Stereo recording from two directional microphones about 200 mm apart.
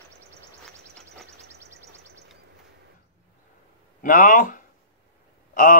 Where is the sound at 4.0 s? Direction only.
40° left (ahead or behind).